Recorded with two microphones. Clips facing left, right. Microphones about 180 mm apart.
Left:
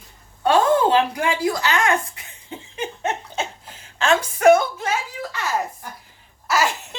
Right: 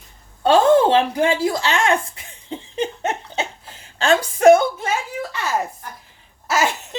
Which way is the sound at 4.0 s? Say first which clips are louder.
Right 2 dB; 30° right (ahead or behind).